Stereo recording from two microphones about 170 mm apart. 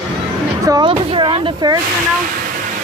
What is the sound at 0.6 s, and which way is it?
Speech, 25° right (ahead or behind).